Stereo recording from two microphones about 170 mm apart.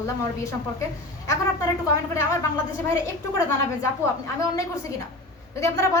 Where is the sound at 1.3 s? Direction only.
20° left (ahead or behind).